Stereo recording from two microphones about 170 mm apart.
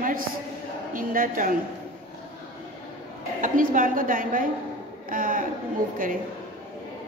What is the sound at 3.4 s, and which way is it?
A woman's voice, 55° right (ahead or behind).